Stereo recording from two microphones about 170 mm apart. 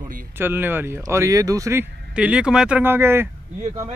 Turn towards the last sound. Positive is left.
turn(degrees=-15)  # may be behind; listen again after turning